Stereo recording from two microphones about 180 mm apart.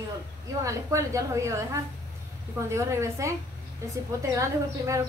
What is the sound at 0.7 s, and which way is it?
A woman's voice, 15° right (ahead or behind).